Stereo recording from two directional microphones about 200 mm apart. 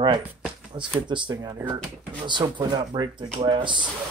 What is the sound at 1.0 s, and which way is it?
Speech, 20° right (ahead or behind).